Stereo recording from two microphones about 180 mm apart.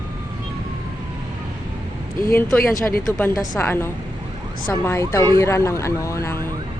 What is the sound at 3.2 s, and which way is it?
Speech, 10° left (ahead or behind).